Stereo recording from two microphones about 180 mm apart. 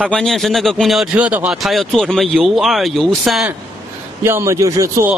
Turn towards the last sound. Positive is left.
turn(degrees=-20)  # may be behind; listen again after turning